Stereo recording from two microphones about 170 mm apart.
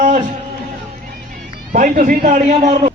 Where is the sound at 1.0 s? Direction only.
50° right (ahead or behind).